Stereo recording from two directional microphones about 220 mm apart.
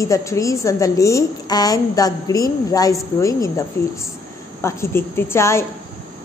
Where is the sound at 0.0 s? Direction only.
15° left (ahead or behind).